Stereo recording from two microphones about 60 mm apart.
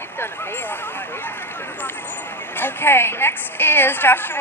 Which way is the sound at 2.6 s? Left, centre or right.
Left.